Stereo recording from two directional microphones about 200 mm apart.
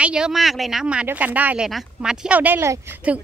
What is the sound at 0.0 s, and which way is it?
Speech, 5° right (ahead or behind).